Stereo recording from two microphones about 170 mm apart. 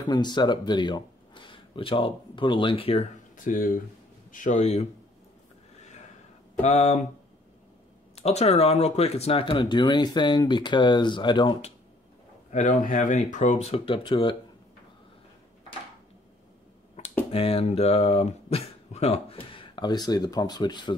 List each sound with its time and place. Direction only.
0.0 s speech: 25° left (ahead or behind)
3.4 s speech: 55° left (ahead or behind)
6.6 s speech: 40° left (ahead or behind)
8.2 s speech: 40° left (ahead or behind)
12.4 s speech: 50° left (ahead or behind); by 14.3 s 30° left (ahead or behind)
17.3 s speech: 35° left (ahead or behind)